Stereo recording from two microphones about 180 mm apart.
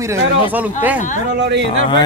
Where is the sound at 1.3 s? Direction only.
75° right (ahead or behind).